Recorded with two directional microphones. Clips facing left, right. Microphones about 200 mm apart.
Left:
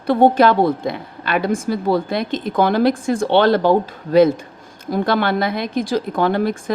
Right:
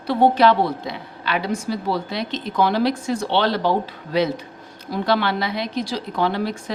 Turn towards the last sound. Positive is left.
turn(degrees=50)  # may be behind; listen again after turning